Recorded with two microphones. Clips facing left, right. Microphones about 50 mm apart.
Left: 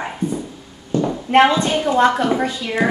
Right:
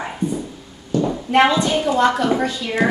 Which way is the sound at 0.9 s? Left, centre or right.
Left.